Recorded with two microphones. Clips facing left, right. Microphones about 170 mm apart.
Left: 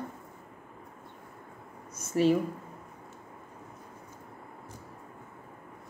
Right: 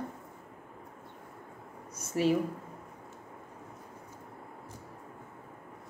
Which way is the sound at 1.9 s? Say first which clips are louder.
Left 3 dB; 10° right (ahead or behind).